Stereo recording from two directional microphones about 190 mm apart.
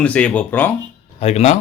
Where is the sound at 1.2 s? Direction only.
35° left (ahead or behind).